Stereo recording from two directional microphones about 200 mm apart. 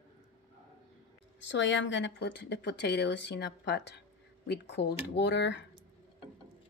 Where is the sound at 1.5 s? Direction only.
65° left (ahead or behind).